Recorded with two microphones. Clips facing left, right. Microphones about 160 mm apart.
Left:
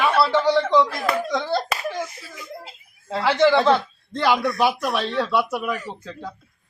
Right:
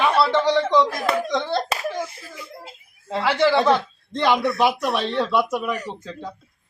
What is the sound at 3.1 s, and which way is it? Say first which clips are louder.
Speech: left 1 dB; 15° right (ahead or behind).